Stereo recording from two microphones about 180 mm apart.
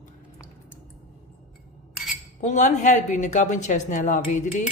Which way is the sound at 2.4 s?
40° left (ahead or behind).